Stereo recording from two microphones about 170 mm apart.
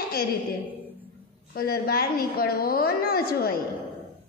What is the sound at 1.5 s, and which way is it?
A woman's voice, 60° left (ahead or behind).